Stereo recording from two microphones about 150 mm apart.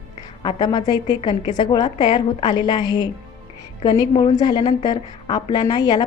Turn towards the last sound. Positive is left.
turn(degrees=30)  # may be behind; listen again after turning